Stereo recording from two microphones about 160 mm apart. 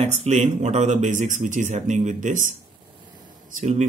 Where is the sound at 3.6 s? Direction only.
45° right (ahead or behind).